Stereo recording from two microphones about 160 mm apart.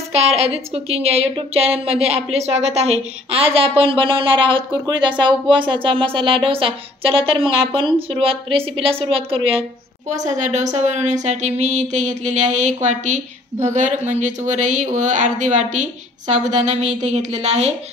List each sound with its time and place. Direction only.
0.1 s speech: 40° right (ahead or behind)